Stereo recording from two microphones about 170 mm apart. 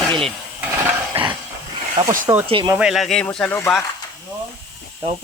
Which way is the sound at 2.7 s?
5° right (ahead or behind).